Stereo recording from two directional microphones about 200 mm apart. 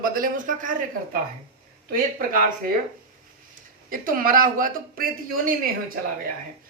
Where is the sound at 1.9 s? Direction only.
45° right (ahead or behind).